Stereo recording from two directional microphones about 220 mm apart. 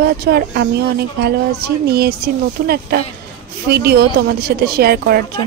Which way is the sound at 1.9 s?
45° right (ahead or behind).